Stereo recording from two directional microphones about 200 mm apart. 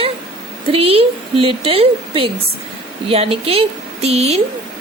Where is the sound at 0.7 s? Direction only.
30° right (ahead or behind).